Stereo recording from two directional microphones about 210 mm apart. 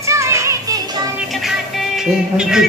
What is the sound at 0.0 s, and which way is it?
Music, 15° right (ahead or behind).